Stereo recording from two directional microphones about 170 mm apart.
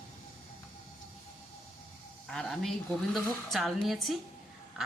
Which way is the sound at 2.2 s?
Centre (ahead or behind).